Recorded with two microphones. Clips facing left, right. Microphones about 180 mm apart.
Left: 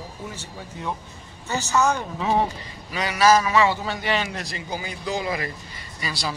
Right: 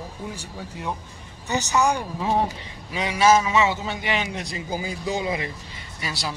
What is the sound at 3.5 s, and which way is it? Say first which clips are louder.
Speech: left 1 dB; 20° right (ahead or behind).